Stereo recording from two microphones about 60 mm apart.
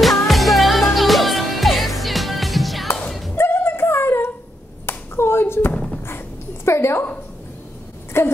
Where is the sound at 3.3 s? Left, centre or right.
Left.